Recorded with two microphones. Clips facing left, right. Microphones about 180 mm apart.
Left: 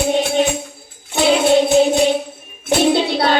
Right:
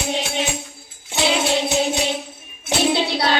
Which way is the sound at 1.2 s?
55° left (ahead or behind).